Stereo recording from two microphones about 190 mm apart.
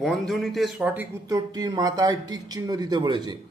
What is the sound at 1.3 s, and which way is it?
Speech, 20° right (ahead or behind).